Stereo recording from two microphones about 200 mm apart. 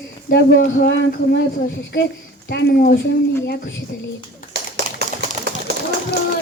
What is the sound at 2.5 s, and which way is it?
Speech, 55° left (ahead or behind).